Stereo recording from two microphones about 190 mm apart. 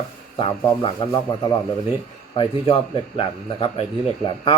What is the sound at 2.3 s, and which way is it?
Speech, 25° left (ahead or behind).